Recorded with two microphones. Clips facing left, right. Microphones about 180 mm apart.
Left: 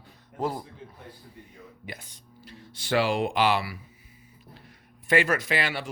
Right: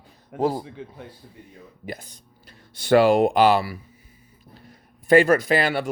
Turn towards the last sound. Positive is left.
turn(degrees=-40)  # may be behind; listen again after turning